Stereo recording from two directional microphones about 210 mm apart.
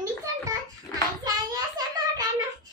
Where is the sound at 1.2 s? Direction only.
15° right (ahead or behind).